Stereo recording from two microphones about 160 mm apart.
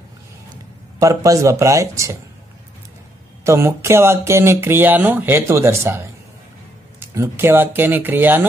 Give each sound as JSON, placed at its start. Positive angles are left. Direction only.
{"t": 0.9, "sound": "speech", "side_deg": -20}
{"t": 3.4, "sound": "speech", "side_deg": -15}